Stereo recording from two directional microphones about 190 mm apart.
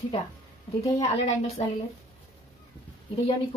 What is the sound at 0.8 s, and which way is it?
Speech, 15° left (ahead or behind).